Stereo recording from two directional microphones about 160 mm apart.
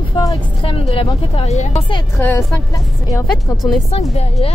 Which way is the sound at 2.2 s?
15° left (ahead or behind).